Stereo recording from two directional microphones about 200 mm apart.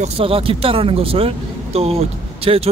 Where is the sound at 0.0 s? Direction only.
30° right (ahead or behind).